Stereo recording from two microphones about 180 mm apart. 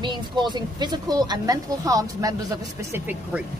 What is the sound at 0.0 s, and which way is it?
Speech, 25° right (ahead or behind).